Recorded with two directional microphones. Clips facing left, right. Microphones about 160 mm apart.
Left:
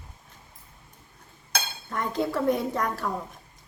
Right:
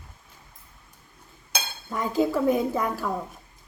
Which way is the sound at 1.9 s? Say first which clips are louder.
Right 4 dB; 5° right (ahead or behind).